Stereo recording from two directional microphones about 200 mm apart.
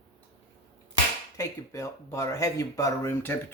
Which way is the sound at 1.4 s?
15° left (ahead or behind).